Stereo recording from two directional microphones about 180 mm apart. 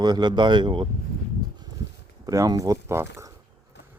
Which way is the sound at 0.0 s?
25° right (ahead or behind).